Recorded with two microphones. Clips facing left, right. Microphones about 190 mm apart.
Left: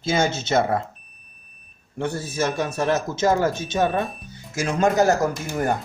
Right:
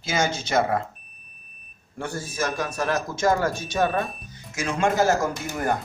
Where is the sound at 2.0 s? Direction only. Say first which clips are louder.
Left 4 dB; 25° left (ahead or behind).